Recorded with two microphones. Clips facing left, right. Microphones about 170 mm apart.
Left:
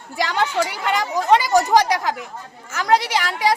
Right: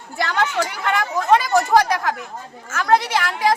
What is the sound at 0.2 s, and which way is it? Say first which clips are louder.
Speech: left 1 dB; 15° left (ahead or behind).